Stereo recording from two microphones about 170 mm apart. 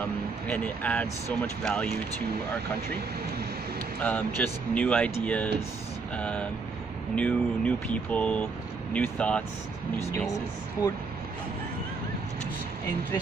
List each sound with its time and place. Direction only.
0.5 s speech: 10° left (ahead or behind)
4.0 s speech: 10° left (ahead or behind)
10.8 s speech: 20° left (ahead or behind)